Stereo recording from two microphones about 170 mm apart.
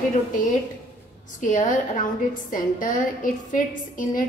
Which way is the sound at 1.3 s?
50° left (ahead or behind).